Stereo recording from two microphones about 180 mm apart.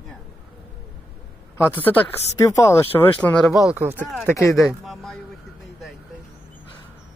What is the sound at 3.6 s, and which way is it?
Speech, 5° right (ahead or behind).